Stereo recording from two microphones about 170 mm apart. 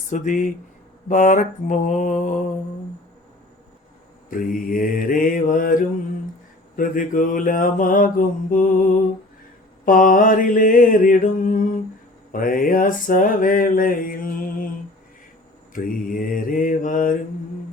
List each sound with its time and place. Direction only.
0.1 s mantra: 50° left (ahead or behind)
4.3 s mantra: 55° left (ahead or behind)
9.8 s mantra: 50° left (ahead or behind)
15.7 s mantra: 55° left (ahead or behind)